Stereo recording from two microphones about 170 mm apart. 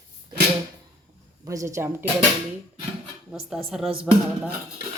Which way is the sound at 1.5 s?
20° right (ahead or behind).